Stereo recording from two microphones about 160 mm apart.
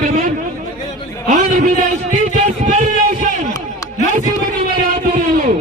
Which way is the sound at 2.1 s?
50° right (ahead or behind).